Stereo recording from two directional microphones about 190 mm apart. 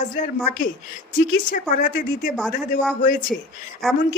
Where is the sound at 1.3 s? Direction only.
45° left (ahead or behind).